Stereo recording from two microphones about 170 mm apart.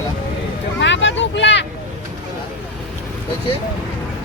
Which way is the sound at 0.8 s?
90° left.